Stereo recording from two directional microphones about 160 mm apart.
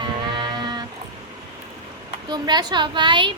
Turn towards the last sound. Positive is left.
turn(degrees=-30)  # may be behind; listen again after turning